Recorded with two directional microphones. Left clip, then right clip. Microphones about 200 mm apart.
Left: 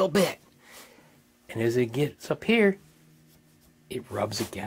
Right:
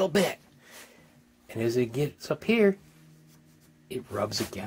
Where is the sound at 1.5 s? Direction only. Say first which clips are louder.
Left 2 dB; 20° left (ahead or behind).